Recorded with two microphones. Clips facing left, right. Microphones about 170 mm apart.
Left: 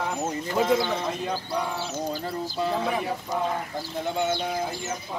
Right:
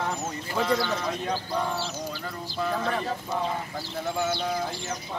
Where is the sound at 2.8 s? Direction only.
10° left (ahead or behind).